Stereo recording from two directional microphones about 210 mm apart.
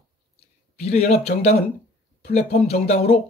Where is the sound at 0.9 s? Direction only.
30° left (ahead or behind).